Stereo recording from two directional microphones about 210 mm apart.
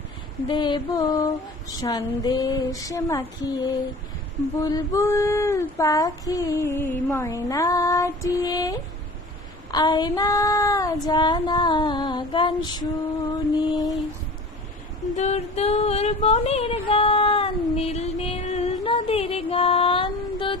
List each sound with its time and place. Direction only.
0.4 s child singing: 20° left (ahead or behind)
4.6 s child singing: 15° left (ahead or behind)
11.0 s female singing: 20° left (ahead or behind)
13.7 s child singing: 15° left (ahead or behind)
15.1 s female singing: 35° left (ahead or behind)